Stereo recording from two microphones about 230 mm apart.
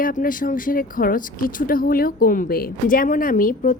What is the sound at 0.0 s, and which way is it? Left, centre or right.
Speech, left.